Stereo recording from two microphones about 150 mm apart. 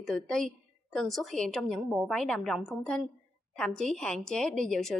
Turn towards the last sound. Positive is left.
turn(degrees=5)  # may be behind; listen again after turning